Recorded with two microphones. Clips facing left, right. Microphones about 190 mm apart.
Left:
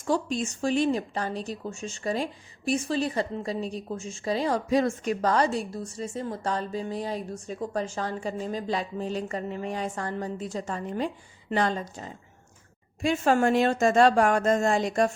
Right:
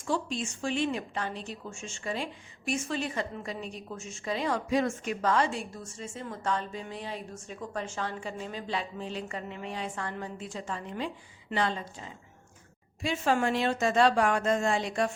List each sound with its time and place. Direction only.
0.0 s a woman's voice: 45° left (ahead or behind)